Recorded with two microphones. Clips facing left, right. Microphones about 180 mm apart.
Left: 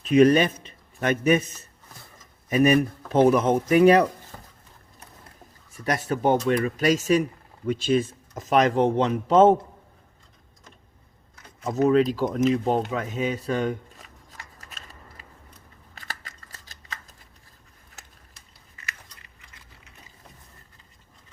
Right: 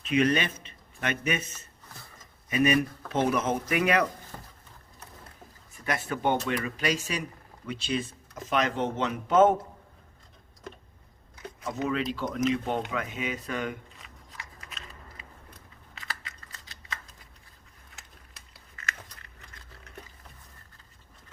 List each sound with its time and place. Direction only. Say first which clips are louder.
0.0 s a man's voice: left 8 dB; 40° left (ahead or behind)
5.7 s speech: left 5 dB; 40° left (ahead or behind)
11.6 s speech: left 10 dB; 40° left (ahead or behind)
12.6 s shuffling cards: left 6 dB; 35° left (ahead or behind)
16.0 s scissors: left 1 dB; 40° left (ahead or behind)